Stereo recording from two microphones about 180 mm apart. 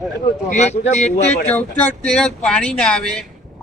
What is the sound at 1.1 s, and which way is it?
A man's voice, 10° left (ahead or behind).